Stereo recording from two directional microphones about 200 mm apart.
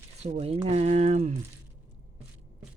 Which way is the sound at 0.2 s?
35° right (ahead or behind).